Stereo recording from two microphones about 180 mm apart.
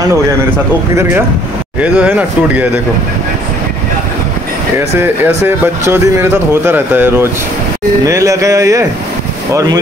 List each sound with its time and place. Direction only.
1.8 s speech: 5° right (ahead or behind)
4.7 s speech: 10° right (ahead or behind)